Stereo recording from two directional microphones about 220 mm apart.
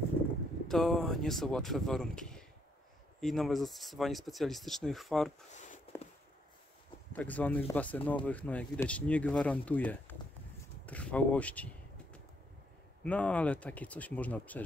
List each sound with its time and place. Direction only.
0.7 s speech: centre (ahead or behind)
5.6 s walk: 35° left (ahead or behind)
7.1 s speech: 5° left (ahead or behind)